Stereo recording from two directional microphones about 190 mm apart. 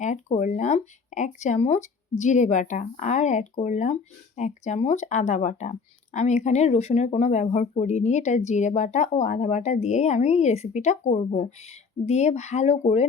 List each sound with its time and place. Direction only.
0.0 s speech: 40° left (ahead or behind)